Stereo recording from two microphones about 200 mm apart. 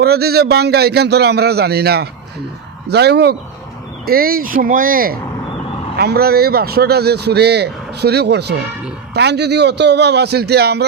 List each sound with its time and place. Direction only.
0.0 s a man's voice: 50° right (ahead or behind)